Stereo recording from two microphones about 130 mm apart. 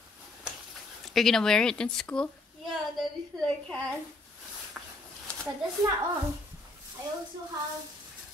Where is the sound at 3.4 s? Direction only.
5° left (ahead or behind).